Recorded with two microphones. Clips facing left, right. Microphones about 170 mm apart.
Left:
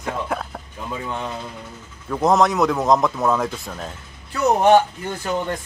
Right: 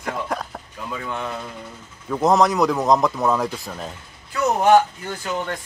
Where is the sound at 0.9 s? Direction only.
15° left (ahead or behind).